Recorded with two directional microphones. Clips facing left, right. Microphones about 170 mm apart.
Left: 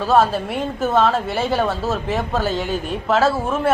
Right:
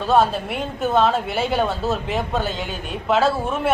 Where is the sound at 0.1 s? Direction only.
Centre (ahead or behind).